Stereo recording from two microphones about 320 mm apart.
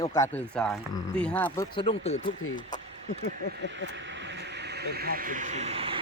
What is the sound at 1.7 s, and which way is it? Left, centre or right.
Speech, centre.